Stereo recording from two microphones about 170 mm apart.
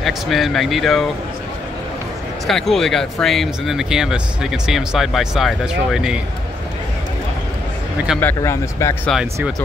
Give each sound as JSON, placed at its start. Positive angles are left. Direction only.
{"t": 0.0, "sound": "speech", "side_deg": 0}
{"t": 2.4, "sound": "speech", "side_deg": 0}
{"t": 8.2, "sound": "speech", "side_deg": 15}
{"t": 9.1, "sound": "speech", "side_deg": -5}